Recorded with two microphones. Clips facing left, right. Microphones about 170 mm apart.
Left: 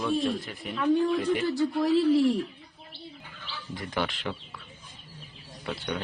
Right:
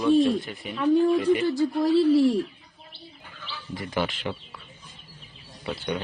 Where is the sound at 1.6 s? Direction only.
30° right (ahead or behind).